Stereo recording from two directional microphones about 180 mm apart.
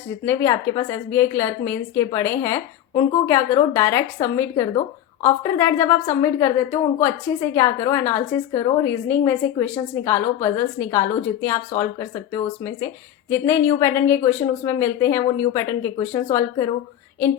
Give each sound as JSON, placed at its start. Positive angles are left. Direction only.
{"t": 0.3, "sound": "a woman's voice", "side_deg": 15}